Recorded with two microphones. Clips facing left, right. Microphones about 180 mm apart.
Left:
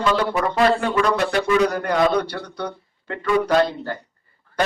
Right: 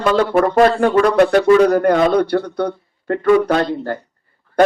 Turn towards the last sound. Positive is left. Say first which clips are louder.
# right 2 dB
turn(degrees=-50)  # may be behind; listen again after turning